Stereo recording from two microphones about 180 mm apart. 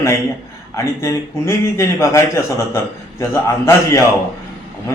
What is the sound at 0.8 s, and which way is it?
Speech, 15° left (ahead or behind).